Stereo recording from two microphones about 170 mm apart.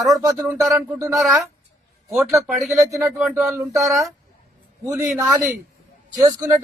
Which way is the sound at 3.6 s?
20° right (ahead or behind).